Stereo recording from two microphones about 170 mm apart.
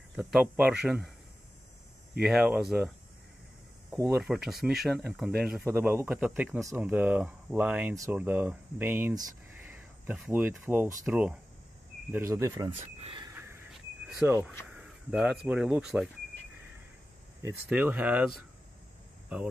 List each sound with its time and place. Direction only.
0.4 s speech: 10° right (ahead or behind)
2.2 s speech: 5° right (ahead or behind)
4.1 s speech: 5° right (ahead or behind)
7.9 s speech: 20° right (ahead or behind)
8.2 s speech: 10° right (ahead or behind)
9.6 s a sound: 10° right (ahead or behind)
11.1 s speech: 5° right (ahead or behind)
12.7 s a sound: 35° right (ahead or behind)
13.7 s a sound: 5° right (ahead or behind)
14.8 s speech: 5° right (ahead or behind)
17.6 s speech: 5° right (ahead or behind)